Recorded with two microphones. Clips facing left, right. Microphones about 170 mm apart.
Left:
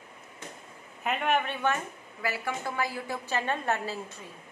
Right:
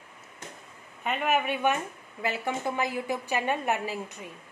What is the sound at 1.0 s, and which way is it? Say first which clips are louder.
A woman's voice: right 1 dB; centre (ahead or behind).